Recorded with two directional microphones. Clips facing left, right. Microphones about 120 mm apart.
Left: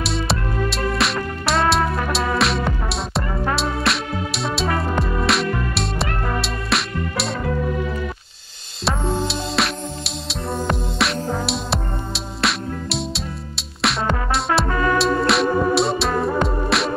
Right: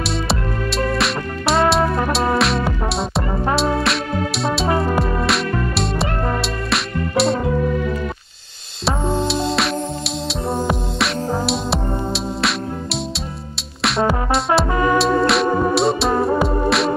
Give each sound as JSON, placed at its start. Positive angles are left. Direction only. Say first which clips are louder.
{"t": 0.0, "sound": "music", "louder": "right 1 dB", "side_deg": 0}
{"t": 8.8, "sound": "music", "louder": "right 2 dB", "side_deg": 0}
{"t": 10.4, "sound": "music", "louder": "right 3 dB", "side_deg": -30}
{"t": 10.7, "sound": "music", "louder": "right 1 dB", "side_deg": 0}